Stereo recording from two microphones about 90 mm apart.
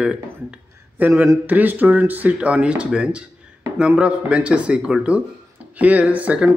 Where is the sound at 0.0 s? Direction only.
10° right (ahead or behind).